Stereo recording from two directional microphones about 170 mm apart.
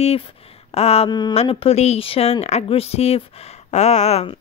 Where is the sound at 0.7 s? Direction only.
35° left (ahead or behind).